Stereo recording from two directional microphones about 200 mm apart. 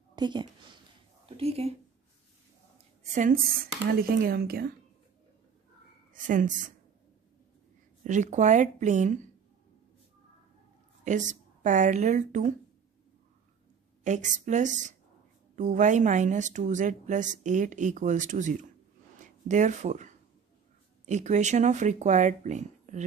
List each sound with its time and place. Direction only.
0.1 s a woman's voice: 20° right (ahead or behind)
3.0 s a woman's voice: 40° right (ahead or behind)
6.2 s speech: 40° right (ahead or behind)
8.0 s speech: 35° right (ahead or behind)
11.1 s speech: 40° right (ahead or behind)
14.0 s speech: 40° right (ahead or behind)